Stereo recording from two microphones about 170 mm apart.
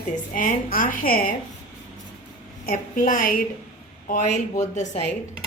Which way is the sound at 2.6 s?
50° left (ahead or behind).